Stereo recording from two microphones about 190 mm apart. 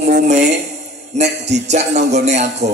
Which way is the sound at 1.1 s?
35° right (ahead or behind).